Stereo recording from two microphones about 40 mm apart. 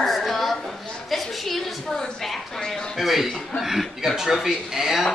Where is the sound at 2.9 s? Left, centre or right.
Centre.